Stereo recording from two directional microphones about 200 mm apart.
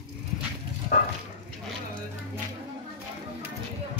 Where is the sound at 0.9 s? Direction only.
45° left (ahead or behind).